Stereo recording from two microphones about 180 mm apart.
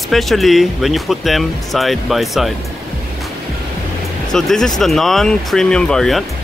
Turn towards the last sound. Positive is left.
turn(degrees=0)  # may be behind; listen again after turning